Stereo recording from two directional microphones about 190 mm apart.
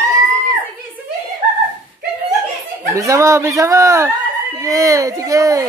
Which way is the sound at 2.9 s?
15° right (ahead or behind).